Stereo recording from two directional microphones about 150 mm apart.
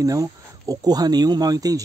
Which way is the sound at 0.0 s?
20° right (ahead or behind).